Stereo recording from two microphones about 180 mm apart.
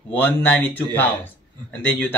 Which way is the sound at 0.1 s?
10° left (ahead or behind).